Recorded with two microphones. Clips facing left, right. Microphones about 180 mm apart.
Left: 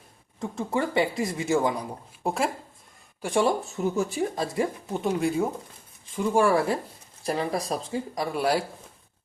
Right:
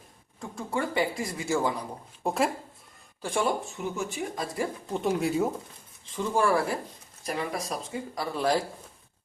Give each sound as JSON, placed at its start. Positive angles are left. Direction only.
{"t": 0.3, "sound": "speech", "side_deg": 20}
{"t": 2.2, "sound": "speech", "side_deg": 0}
{"t": 3.2, "sound": "speech", "side_deg": 15}
{"t": 3.8, "sound": "speech", "side_deg": 35}
{"t": 4.9, "sound": "speech", "side_deg": 0}
{"t": 6.1, "sound": "speech", "side_deg": 15}
{"t": 7.3, "sound": "speech", "side_deg": 35}
{"t": 8.1, "sound": "speech", "side_deg": 15}